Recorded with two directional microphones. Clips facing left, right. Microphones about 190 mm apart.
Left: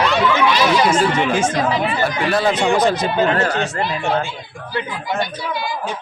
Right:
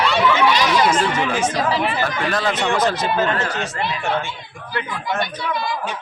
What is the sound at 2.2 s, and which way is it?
Speech, 10° left (ahead or behind).